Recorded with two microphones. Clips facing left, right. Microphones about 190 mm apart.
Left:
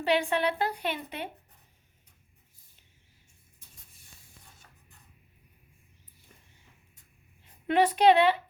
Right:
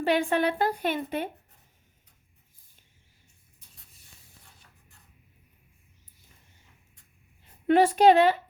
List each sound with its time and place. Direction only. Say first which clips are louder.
0.0 s a woman's voice: right 2 dB; 50° right (ahead or behind)
7.7 s a woman's voice: right 3 dB; 45° right (ahead or behind)